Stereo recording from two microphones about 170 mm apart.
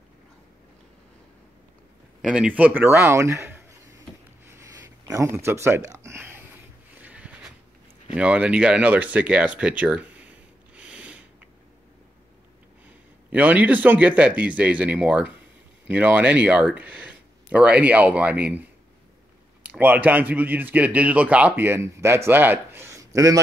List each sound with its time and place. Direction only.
2.2 s speech: 5° right (ahead or behind)
4.5 s a sound: 15° right (ahead or behind)
8.1 s speech: 5° right (ahead or behind)
13.3 s speech: 10° right (ahead or behind)
19.6 s speech: 10° right (ahead or behind)